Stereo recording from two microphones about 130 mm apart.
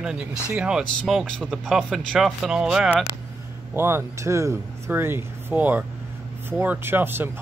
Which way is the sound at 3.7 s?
20° right (ahead or behind).